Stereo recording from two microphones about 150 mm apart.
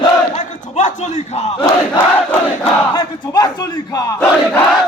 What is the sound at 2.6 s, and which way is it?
Speech, 30° left (ahead or behind).